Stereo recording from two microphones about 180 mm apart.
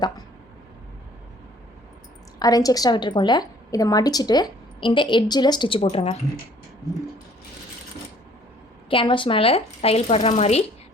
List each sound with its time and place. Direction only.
2.4 s a woman's voice: 20° left (ahead or behind)
8.9 s speech: 30° left (ahead or behind)